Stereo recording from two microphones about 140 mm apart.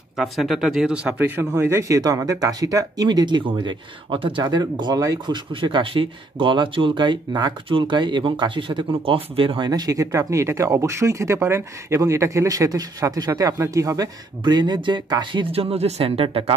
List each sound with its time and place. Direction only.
0.2 s speech: centre (ahead or behind); by 9.7 s 40° right (ahead or behind)
9.7 s speech: 25° right (ahead or behind)
15.5 s speech: 45° right (ahead or behind)